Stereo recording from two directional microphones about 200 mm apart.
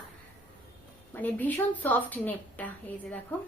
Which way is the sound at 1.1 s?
10° left (ahead or behind).